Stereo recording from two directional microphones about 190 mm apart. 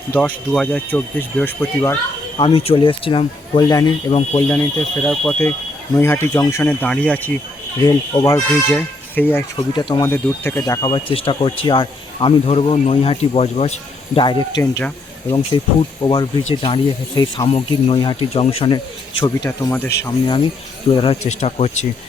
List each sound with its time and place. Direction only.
0.2 s speech: 5° left (ahead or behind)
2.4 s speech: 30° left (ahead or behind)
4.3 s speech: 10° left (ahead or behind)
9.6 s speech: 25° left (ahead or behind)
10.1 s speech: 10° left (ahead or behind); by 13.7 s 35° left (ahead or behind)
14.2 s speech: 25° left (ahead or behind)
15.3 s speech: 25° left (ahead or behind)
19.5 s speech: 10° left (ahead or behind)
20.1 s speech: 25° left (ahead or behind)